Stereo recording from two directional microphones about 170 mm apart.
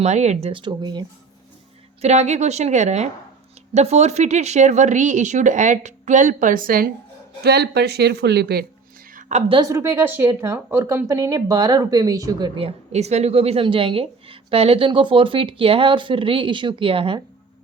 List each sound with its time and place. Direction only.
0.0 s speech: 40° right (ahead or behind)
2.0 s speech: 40° right (ahead or behind); by 6.9 s 60° right (ahead or behind)
7.4 s speech: 70° right (ahead or behind)
9.5 s a woman's voice: 20° right (ahead or behind)
12.5 s speech: 35° right (ahead or behind)